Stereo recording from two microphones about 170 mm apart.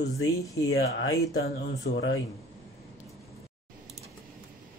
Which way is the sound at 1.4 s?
90° left.